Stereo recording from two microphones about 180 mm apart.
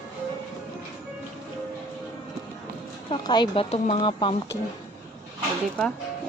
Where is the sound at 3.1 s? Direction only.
25° left (ahead or behind).